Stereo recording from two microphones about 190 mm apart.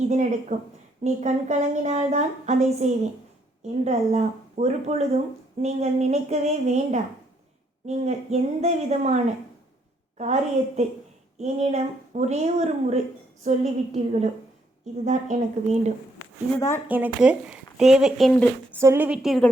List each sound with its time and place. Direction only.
0.1 s a woman's voice: 40° right (ahead or behind)
16.6 s speech: 15° left (ahead or behind)
16.9 s a woman's voice: 10° right (ahead or behind)
18.7 s a woman's voice: 10° right (ahead or behind)